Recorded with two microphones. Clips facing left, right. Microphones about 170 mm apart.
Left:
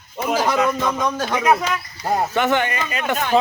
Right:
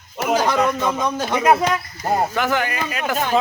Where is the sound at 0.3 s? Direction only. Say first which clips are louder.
Right 1 dB; centre (ahead or behind).